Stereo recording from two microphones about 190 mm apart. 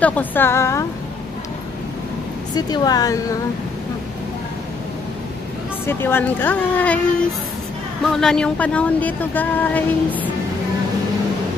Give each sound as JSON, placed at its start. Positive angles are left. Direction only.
{"t": 0.0, "sound": "speech", "side_deg": 10}
{"t": 2.5, "sound": "speech", "side_deg": 20}
{"t": 5.9, "sound": "speech", "side_deg": 10}
{"t": 8.0, "sound": "speech", "side_deg": 0}